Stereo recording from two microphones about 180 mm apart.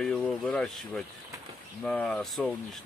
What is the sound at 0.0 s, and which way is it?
Speech, 5° left (ahead or behind).